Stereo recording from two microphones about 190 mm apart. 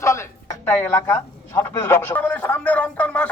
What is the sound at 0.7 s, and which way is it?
Speech, 15° left (ahead or behind).